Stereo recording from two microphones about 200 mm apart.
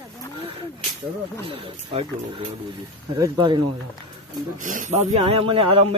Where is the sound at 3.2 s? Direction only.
20° right (ahead or behind).